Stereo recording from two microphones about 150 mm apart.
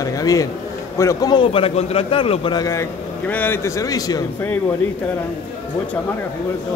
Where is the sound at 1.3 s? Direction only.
35° left (ahead or behind).